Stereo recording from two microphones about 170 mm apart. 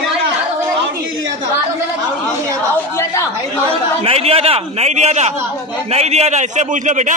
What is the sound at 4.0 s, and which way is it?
A man's voice, 35° right (ahead or behind).